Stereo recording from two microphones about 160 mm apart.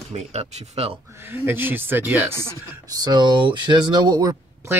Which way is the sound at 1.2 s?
15° right (ahead or behind).